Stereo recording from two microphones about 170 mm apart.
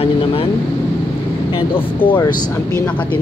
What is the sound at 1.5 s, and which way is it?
Speech, 30° left (ahead or behind).